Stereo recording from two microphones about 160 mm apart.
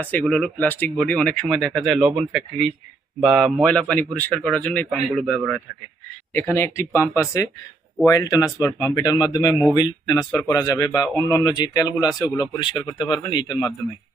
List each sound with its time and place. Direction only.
0.0 s a man's voice: 10° left (ahead or behind)
6.3 s a man's voice: 15° left (ahead or behind)